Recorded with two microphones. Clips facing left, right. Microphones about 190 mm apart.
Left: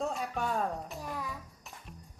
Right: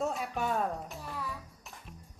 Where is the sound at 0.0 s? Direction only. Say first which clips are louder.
Right 1 dB; centre (ahead or behind).